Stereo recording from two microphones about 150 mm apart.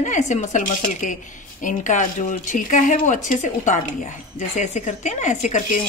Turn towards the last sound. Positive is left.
turn(degrees=55)  # may be behind; listen again after turning